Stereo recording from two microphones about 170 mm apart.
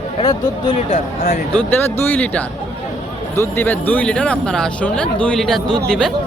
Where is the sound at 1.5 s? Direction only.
10° left (ahead or behind).